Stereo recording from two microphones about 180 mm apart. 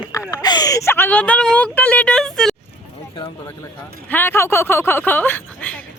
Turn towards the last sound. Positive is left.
turn(degrees=10)  # may be behind; listen again after turning